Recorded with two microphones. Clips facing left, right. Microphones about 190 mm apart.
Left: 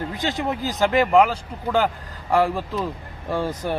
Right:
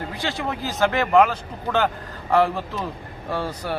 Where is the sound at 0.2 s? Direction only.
20° left (ahead or behind).